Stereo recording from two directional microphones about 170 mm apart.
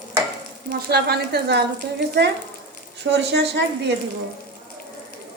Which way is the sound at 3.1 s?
80° right.